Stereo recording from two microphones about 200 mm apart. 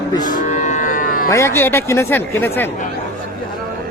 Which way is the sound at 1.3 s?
15° left (ahead or behind).